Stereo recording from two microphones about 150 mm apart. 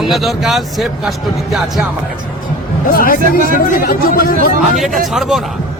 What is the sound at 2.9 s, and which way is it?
Speech, 75° left (ahead or behind).